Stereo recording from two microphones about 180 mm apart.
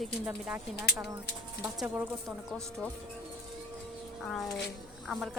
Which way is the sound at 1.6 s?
10° right (ahead or behind).